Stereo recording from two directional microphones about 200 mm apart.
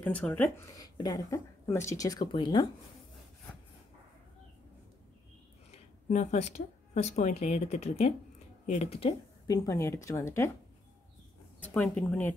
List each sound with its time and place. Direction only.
0.0 s speech: 5° left (ahead or behind)
0.7 s speech: 20° left (ahead or behind)
5.7 s speech: 35° left (ahead or behind)
9.5 s speech: 15° left (ahead or behind)
11.6 s speech: 5° left (ahead or behind)